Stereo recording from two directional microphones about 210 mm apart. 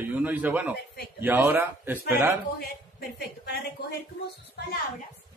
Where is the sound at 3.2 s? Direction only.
50° left (ahead or behind).